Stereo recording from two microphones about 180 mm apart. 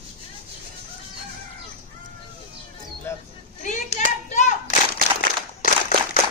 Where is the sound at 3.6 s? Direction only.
45° left (ahead or behind).